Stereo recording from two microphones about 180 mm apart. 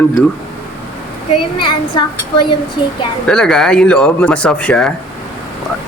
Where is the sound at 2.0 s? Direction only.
25° left (ahead or behind).